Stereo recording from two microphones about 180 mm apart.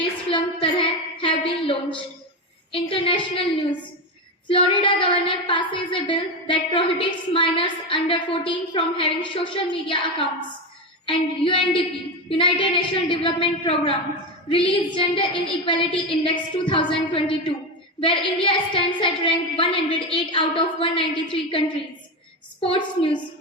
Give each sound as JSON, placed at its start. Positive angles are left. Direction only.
{"t": 0.3, "sound": "a sound", "side_deg": 30}
{"t": 2.7, "sound": "a woman's voice", "side_deg": 30}
{"t": 4.4, "sound": "a woman's voice", "side_deg": 30}
{"t": 22.6, "sound": "a woman's voice", "side_deg": 30}